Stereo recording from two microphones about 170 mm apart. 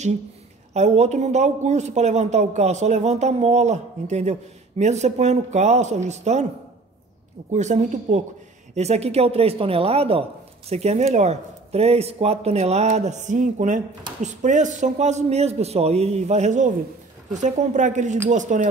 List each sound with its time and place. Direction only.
0.7 s speech: 40° right (ahead or behind)
7.5 s a man's voice: 45° right (ahead or behind)